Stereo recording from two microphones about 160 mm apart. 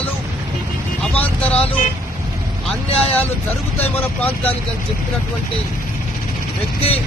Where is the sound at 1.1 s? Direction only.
10° left (ahead or behind).